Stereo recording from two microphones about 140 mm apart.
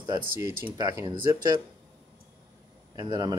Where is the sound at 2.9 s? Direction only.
25° right (ahead or behind).